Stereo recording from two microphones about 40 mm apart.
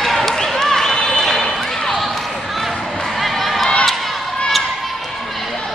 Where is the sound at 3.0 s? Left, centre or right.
Centre.